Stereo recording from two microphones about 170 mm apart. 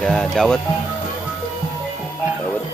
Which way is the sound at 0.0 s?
Centre (ahead or behind).